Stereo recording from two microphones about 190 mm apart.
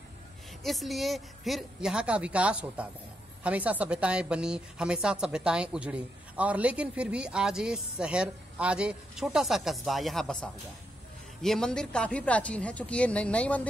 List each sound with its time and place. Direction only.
0.7 s a woman's voice: centre (ahead or behind)
11.4 s a woman's voice: 5° left (ahead or behind)